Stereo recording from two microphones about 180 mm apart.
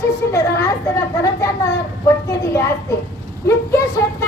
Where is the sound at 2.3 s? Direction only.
15° left (ahead or behind).